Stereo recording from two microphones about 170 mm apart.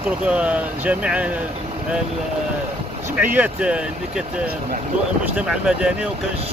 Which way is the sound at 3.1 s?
10° right (ahead or behind).